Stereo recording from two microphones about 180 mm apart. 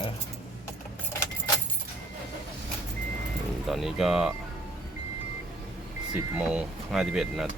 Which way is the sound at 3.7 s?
Centre (ahead or behind).